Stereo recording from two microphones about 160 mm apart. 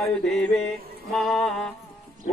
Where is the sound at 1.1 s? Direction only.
Centre (ahead or behind).